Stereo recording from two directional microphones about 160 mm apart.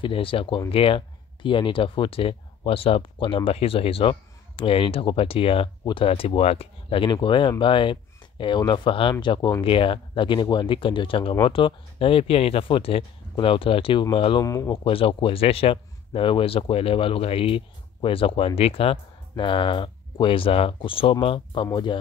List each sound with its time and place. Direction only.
0.0 s speech: 35° left (ahead or behind)
14.4 s speech: 20° left (ahead or behind)